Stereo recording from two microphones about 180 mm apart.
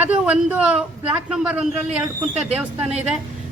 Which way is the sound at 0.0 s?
5° right (ahead or behind).